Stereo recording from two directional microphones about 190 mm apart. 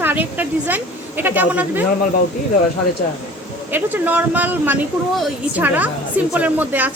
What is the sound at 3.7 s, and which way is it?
A woman's voice, 10° right (ahead or behind).